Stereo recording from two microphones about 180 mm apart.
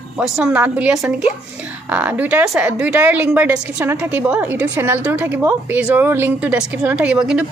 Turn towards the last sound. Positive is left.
turn(degrees=-5)  # may be behind; listen again after turning